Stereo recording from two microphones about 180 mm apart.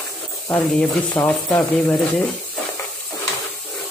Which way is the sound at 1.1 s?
10° left (ahead or behind).